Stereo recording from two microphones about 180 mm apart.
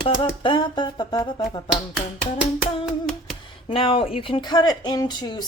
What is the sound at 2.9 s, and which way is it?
Hands, centre (ahead or behind).